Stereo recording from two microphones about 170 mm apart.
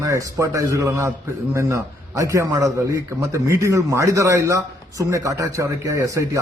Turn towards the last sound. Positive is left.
turn(degrees=-20)  # may be behind; listen again after turning